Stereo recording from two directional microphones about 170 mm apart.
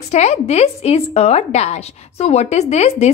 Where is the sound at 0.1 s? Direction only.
40° left (ahead or behind).